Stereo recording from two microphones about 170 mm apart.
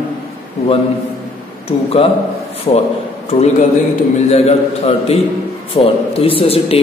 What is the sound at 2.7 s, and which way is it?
Speech, 35° left (ahead or behind).